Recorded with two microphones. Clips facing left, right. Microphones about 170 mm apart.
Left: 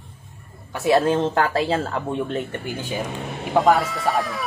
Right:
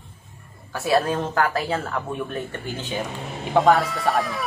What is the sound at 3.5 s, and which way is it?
Speech, centre (ahead or behind).